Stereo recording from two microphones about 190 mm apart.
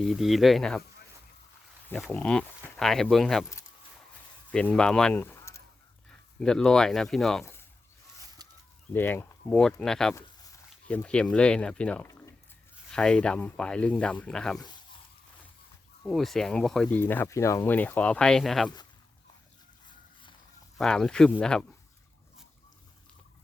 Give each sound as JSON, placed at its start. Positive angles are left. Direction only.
{"t": 0.0, "sound": "speech", "side_deg": 0}
{"t": 1.9, "sound": "speech", "side_deg": 5}
{"t": 4.5, "sound": "speech", "side_deg": 5}
{"t": 6.4, "sound": "speech", "side_deg": 5}
{"t": 8.4, "sound": "chicken", "side_deg": -20}
{"t": 8.9, "sound": "speech", "side_deg": 10}
{"t": 16.0, "sound": "speech", "side_deg": 0}
{"t": 20.7, "sound": "speech", "side_deg": 0}